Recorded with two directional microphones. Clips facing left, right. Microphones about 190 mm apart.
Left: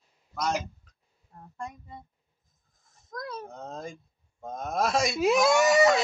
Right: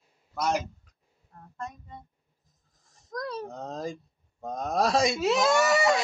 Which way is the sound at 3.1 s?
35° right (ahead or behind).